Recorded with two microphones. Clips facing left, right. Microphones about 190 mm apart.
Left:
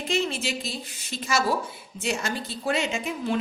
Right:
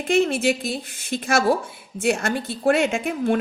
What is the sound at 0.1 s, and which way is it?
Speech, 55° right (ahead or behind).